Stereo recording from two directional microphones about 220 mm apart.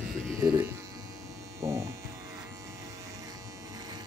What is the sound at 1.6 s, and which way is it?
Electric shaver, 15° right (ahead or behind).